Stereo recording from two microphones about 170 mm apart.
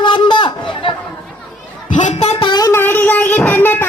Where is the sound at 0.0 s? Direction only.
30° left (ahead or behind).